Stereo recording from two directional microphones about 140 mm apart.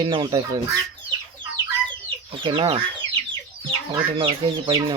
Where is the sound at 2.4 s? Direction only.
40° right (ahead or behind).